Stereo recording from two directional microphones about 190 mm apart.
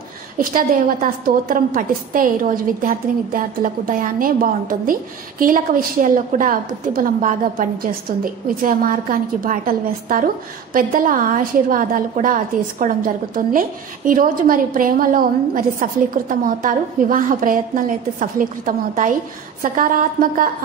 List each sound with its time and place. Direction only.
0.4 s a woman's voice: 45° right (ahead or behind)